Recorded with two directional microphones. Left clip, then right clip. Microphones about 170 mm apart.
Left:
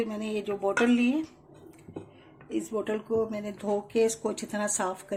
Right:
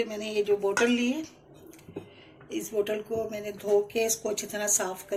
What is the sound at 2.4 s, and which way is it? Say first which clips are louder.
Speech: right 2 dB; 55° left (ahead or behind).